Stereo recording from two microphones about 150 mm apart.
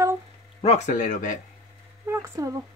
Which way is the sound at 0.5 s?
45° left (ahead or behind).